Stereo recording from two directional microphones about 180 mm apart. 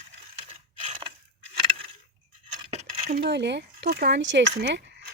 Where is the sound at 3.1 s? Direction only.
70° right (ahead or behind).